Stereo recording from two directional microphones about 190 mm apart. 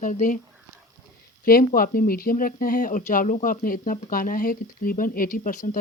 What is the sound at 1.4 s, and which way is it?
Speech, 45° left (ahead or behind).